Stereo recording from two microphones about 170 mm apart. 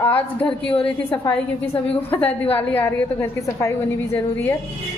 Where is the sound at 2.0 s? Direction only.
10° left (ahead or behind).